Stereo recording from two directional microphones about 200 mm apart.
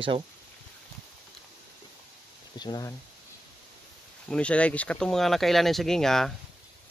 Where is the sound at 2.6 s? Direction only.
20° left (ahead or behind).